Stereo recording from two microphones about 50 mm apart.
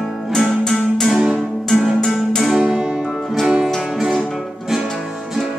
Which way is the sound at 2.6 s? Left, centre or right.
Centre.